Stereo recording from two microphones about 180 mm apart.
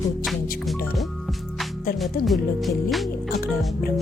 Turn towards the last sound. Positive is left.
turn(degrees=0)  # may be behind; listen again after turning